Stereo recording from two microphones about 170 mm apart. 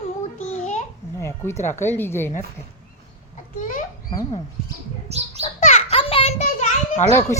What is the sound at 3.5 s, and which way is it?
Speech, 45° left (ahead or behind).